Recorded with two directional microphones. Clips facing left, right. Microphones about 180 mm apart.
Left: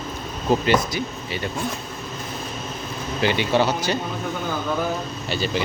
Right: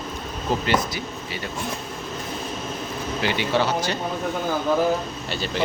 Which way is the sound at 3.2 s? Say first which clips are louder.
Left 3 dB; 15° left (ahead or behind).